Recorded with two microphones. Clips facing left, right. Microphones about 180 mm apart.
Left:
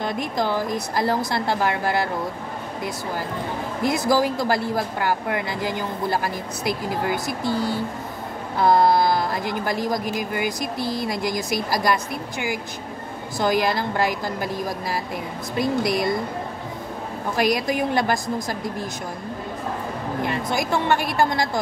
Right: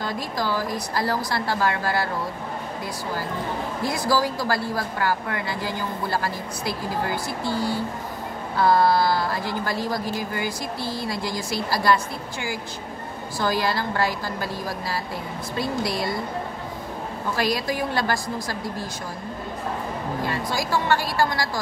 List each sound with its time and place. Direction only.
0.0 s speech: 20° left (ahead or behind)
3.8 s a woman's voice: 20° left (ahead or behind)
17.4 s speech: 20° left (ahead or behind)
20.2 s speech: 20° left (ahead or behind)